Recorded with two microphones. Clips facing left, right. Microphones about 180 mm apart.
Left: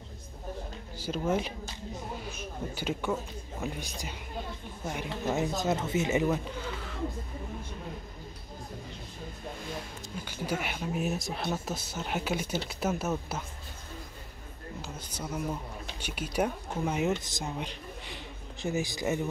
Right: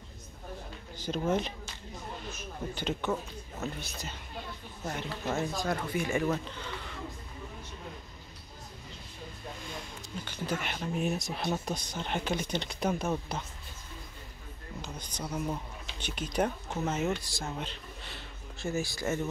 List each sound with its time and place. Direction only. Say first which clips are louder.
0.9 s speech: even; 10° left (ahead or behind)
10.2 s speech: left 2 dB; 10° left (ahead or behind)
14.8 s a sound: right 1 dB; 5° left (ahead or behind)
16.0 s speech: even; 10° left (ahead or behind)